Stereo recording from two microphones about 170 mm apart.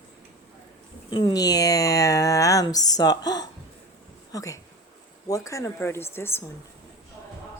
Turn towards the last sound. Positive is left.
turn(degrees=15)  # may be behind; listen again after turning